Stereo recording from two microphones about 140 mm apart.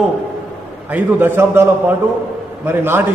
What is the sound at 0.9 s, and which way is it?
A man's voice, 15° right (ahead or behind).